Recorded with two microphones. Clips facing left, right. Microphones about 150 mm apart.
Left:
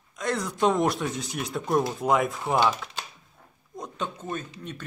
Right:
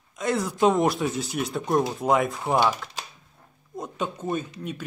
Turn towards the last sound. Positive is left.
turn(degrees=-10)  # may be behind; listen again after turning